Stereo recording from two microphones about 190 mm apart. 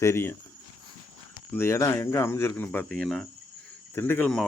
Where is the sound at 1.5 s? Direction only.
15° left (ahead or behind).